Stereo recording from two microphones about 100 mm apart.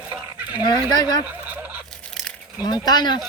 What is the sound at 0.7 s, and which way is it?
Speech, 40° left (ahead or behind).